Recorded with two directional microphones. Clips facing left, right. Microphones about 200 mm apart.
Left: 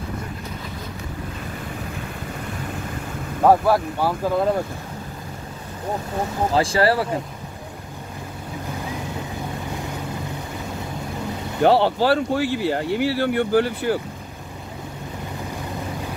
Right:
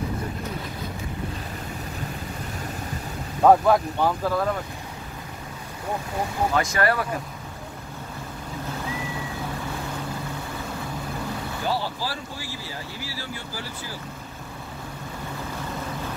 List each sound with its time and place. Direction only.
3.4 s speech: 5° left (ahead or behind)
6.5 s speech: 30° left (ahead or behind)
11.6 s speech: 65° left (ahead or behind)